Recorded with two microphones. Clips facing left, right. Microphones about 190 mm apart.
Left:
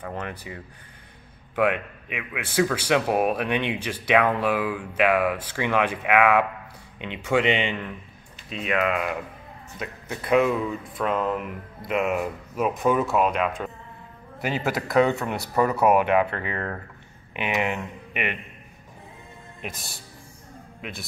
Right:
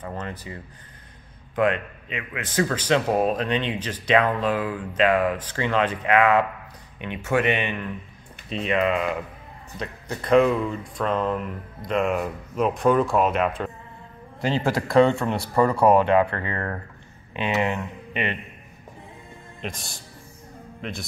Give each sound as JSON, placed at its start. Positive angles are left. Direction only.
{"t": 0.1, "sound": "a man's voice", "side_deg": 10}
{"t": 8.5, "sound": "a man's voice", "side_deg": 5}
{"t": 19.6, "sound": "speech", "side_deg": 0}